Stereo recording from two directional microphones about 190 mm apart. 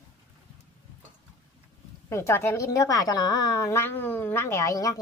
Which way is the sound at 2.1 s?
15° left (ahead or behind).